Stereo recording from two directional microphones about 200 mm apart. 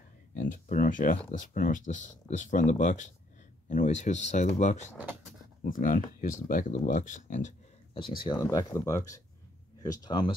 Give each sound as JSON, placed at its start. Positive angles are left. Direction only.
{"t": 0.4, "sound": "speech", "side_deg": 40}
{"t": 8.2, "sound": "speech", "side_deg": 20}